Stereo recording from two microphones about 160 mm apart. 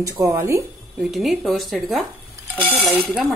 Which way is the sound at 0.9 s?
Centre (ahead or behind).